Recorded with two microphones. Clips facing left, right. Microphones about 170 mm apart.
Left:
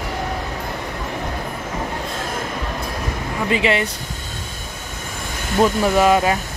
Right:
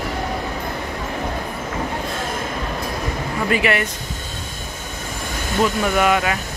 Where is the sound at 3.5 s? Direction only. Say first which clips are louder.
Left 1 dB; 25° left (ahead or behind).